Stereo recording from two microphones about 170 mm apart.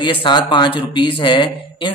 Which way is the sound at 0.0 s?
30° left (ahead or behind).